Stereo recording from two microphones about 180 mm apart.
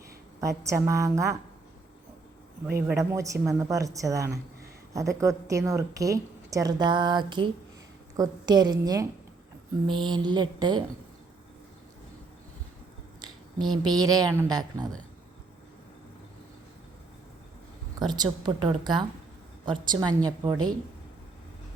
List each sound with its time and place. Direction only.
0.3 s a woman's voice: 15° right (ahead or behind)
2.8 s a woman's voice: 15° right (ahead or behind)
13.2 s a woman's voice: 25° right (ahead or behind)
18.0 s a woman's voice: 25° right (ahead or behind)